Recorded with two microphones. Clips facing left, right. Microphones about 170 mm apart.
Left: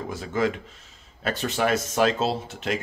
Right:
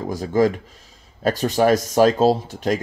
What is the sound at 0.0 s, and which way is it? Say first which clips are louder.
Speech: right 7 dB; 35° right (ahead or behind).